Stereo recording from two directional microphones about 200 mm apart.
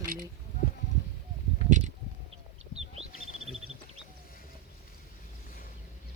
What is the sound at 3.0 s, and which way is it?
Bird, 30° right (ahead or behind).